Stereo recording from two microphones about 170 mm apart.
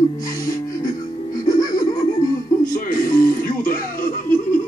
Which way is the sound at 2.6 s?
55° left (ahead or behind).